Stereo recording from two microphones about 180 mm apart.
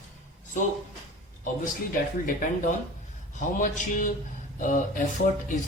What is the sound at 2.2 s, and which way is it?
Speech, 50° left (ahead or behind).